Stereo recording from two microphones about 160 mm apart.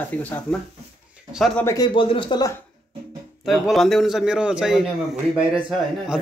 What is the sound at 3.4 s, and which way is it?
A man's voice, centre (ahead or behind).